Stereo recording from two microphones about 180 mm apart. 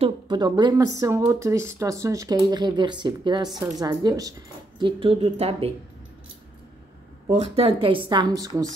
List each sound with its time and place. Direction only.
0.0 s speech: 25° right (ahead or behind)
7.2 s speech: 30° right (ahead or behind)